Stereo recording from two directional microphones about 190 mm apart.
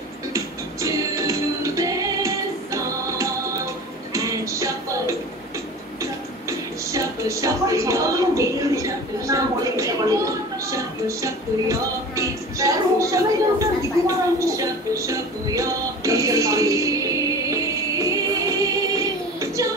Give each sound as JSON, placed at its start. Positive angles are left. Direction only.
{"t": 0.3, "sound": "music", "side_deg": -15}
{"t": 6.9, "sound": "a sound", "side_deg": -15}
{"t": 10.7, "sound": "music", "side_deg": -15}
{"t": 18.9, "sound": "child singing", "side_deg": -15}